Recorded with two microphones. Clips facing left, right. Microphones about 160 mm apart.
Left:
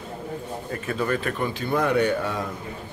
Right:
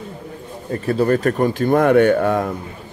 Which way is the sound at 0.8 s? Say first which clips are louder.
Right 10 dB; 40° right (ahead or behind).